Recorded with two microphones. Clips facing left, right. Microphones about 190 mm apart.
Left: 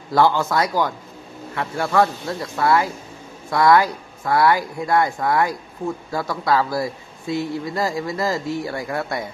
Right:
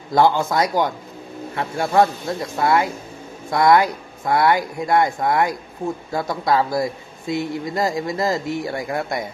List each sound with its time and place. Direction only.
0.1 s a man's voice: 15° right (ahead or behind)